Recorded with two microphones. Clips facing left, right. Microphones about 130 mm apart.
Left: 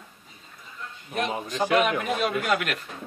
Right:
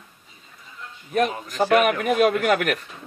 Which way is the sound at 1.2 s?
20° left (ahead or behind).